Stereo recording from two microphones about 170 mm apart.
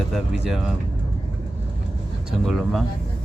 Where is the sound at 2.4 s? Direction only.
Centre (ahead or behind).